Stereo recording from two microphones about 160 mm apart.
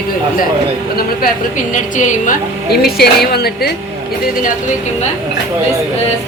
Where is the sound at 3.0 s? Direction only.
80° left.